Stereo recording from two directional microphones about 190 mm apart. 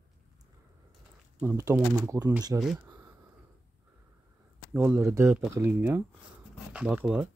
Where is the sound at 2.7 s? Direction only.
15° right (ahead or behind).